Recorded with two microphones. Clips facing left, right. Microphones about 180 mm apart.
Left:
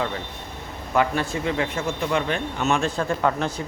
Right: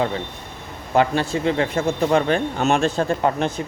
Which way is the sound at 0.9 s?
25° right (ahead or behind).